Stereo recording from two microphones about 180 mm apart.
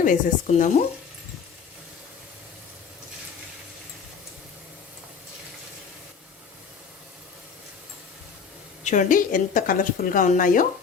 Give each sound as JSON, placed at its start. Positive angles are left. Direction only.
{"t": 0.0, "sound": "a woman's voice", "side_deg": 45}
{"t": 8.8, "sound": "a woman's voice", "side_deg": 45}